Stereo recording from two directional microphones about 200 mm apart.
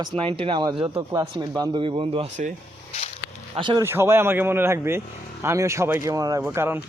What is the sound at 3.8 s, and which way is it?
Speech, 10° right (ahead or behind).